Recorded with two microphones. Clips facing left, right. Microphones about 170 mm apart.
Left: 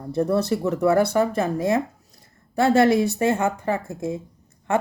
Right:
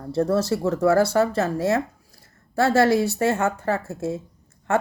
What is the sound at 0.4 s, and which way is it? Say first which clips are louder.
Speech: even; 20° left (ahead or behind).